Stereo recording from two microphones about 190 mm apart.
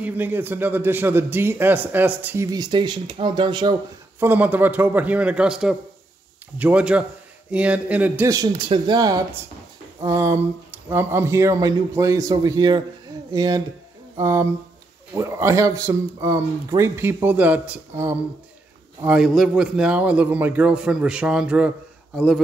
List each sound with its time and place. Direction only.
0.0 s a man's voice: 10° right (ahead or behind)
4.2 s a man's voice: 10° right (ahead or behind)